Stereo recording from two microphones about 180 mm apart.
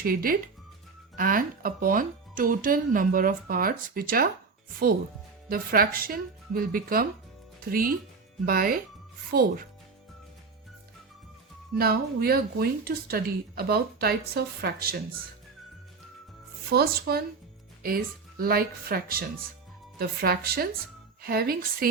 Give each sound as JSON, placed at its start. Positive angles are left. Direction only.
{"t": 0.0, "sound": "speech", "side_deg": -55}
{"t": 5.5, "sound": "speech", "side_deg": -55}
{"t": 11.8, "sound": "speech", "side_deg": -60}
{"t": 16.6, "sound": "speech", "side_deg": -60}